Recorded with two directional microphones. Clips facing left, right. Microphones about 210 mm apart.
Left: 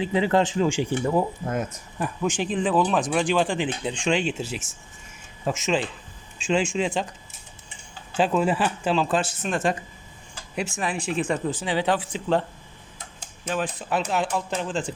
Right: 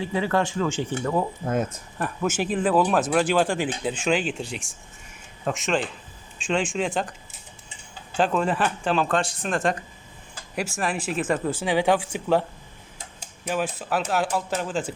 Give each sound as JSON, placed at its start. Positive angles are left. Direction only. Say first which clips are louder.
{"t": 0.0, "sound": "speech", "louder": "left 3 dB", "side_deg": 20}
{"t": 2.0, "sound": "speech", "louder": "even", "side_deg": -5}
{"t": 8.1, "sound": "speech", "louder": "left 1 dB", "side_deg": 0}
{"t": 10.8, "sound": "speech", "louder": "even", "side_deg": -5}